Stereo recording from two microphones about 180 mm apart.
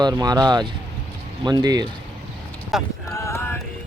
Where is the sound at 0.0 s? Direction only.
20° right (ahead or behind).